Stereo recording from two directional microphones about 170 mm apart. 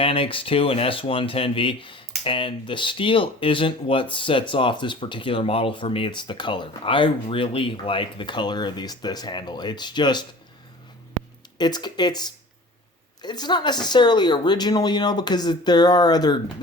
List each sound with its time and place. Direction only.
0.0 s speech: 30° left (ahead or behind)
11.5 s speech: 25° left (ahead or behind)